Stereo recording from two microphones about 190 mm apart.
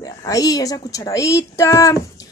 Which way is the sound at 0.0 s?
20° left (ahead or behind).